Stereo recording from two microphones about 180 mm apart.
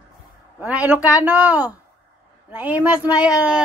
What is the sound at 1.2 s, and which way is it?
Child singing, 10° right (ahead or behind).